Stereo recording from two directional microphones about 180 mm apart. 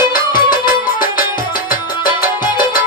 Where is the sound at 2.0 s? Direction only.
25° left (ahead or behind).